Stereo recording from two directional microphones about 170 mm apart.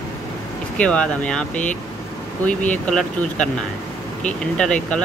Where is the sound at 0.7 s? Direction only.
5° left (ahead or behind).